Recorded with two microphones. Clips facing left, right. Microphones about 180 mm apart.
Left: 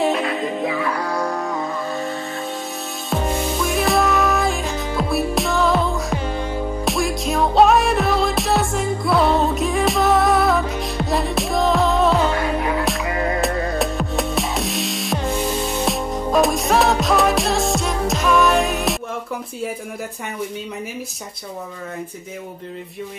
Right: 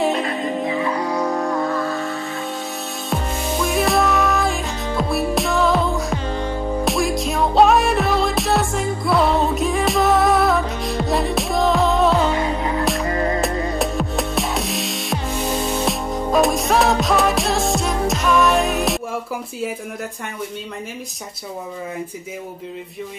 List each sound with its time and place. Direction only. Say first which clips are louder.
0.7 s music: right 1 dB; 25° right (ahead or behind)
1.3 s music: right 3 dB; centre (ahead or behind)
3.6 s music: right 1 dB; centre (ahead or behind)